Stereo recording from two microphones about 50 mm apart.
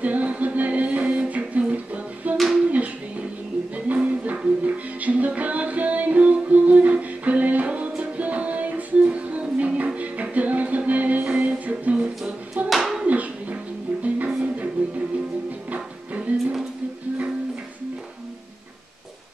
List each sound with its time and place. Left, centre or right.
0.0 s music: right
2.3 s a sound: right
3.7 s music: right
12.6 s hands: centre
13.0 s a sound: right
14.0 s music: right
16.2 s music: right